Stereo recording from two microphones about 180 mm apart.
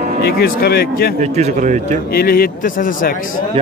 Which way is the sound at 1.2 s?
40° right (ahead or behind).